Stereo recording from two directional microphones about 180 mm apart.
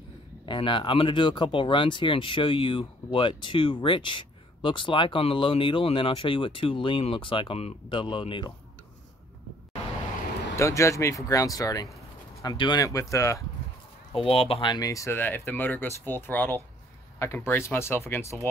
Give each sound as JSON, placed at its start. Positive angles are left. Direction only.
{"t": 0.5, "sound": "speech", "side_deg": 25}
{"t": 10.5, "sound": "speech", "side_deg": 15}
{"t": 14.1, "sound": "speech", "side_deg": 30}